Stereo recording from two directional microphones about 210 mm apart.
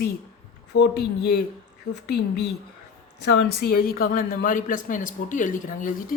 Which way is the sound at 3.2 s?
45° left (ahead or behind).